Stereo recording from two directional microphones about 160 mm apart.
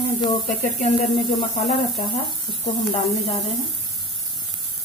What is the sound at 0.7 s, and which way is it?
Speech, 50° left (ahead or behind).